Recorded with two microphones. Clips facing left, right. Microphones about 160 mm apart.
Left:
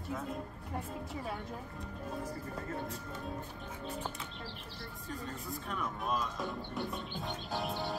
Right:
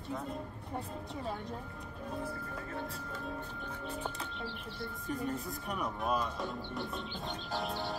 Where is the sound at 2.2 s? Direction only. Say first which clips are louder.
Even; 40° left (ahead or behind).